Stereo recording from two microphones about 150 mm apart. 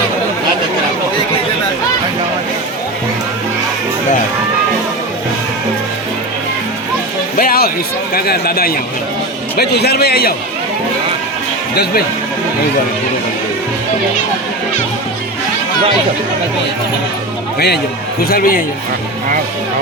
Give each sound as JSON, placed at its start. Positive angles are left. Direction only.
{"t": 7.3, "sound": "a sound", "side_deg": 80}
{"t": 8.1, "sound": "a man's voice", "side_deg": 85}
{"t": 11.7, "sound": "a man's voice", "side_deg": 90}
{"t": 18.2, "sound": "speech", "side_deg": 85}